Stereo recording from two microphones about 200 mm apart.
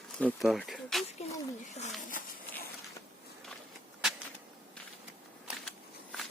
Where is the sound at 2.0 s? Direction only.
40° left (ahead or behind).